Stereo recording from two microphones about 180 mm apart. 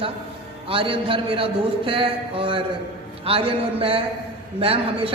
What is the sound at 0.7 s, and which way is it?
A man's voice, 30° right (ahead or behind).